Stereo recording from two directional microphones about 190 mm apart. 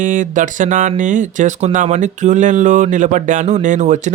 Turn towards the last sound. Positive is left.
turn(degrees=-40)  # may be behind; listen again after turning